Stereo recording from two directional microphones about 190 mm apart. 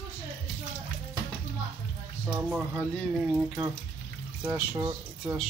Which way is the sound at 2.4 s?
Centre (ahead or behind).